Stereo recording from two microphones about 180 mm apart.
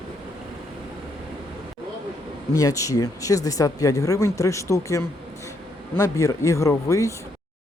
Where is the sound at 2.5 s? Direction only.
20° left (ahead or behind).